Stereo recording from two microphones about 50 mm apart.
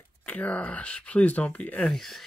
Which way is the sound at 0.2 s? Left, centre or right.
Left.